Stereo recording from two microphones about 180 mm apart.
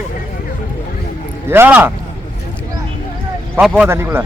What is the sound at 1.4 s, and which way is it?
Speech, 10° right (ahead or behind).